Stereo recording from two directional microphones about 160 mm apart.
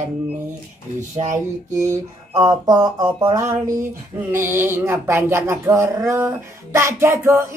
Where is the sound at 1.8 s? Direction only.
25° right (ahead or behind).